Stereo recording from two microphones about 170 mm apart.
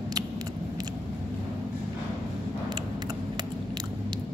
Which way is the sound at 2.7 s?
25° right (ahead or behind).